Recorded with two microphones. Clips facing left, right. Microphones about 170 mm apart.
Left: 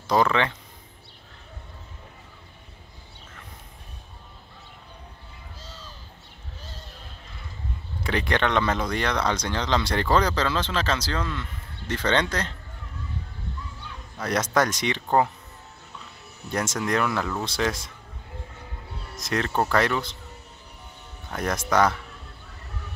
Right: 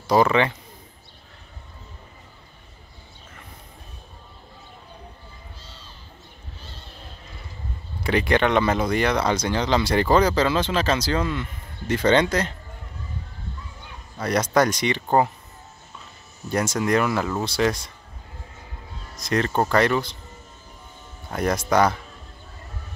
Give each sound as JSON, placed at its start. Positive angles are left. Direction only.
{"t": 0.1, "sound": "speech", "side_deg": -5}
{"t": 8.0, "sound": "speech", "side_deg": -5}
{"t": 14.1, "sound": "speech", "side_deg": 0}
{"t": 16.4, "sound": "speech", "side_deg": 0}
{"t": 19.1, "sound": "speech", "side_deg": 0}
{"t": 21.3, "sound": "speech", "side_deg": -10}